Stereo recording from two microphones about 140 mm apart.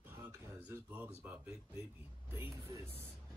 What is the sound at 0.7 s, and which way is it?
Speech, 15° right (ahead or behind).